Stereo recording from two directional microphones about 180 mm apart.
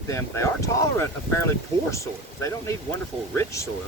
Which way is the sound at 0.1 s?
15° left (ahead or behind).